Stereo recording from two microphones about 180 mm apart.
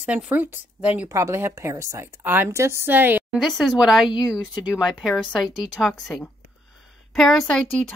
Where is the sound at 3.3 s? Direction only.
Centre (ahead or behind).